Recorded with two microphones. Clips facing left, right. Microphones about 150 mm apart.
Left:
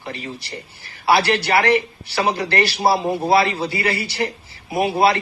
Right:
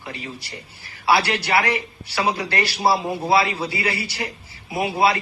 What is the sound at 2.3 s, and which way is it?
A man's voice, 35° left (ahead or behind).